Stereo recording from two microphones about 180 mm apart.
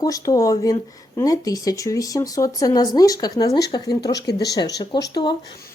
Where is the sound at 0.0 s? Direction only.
20° left (ahead or behind).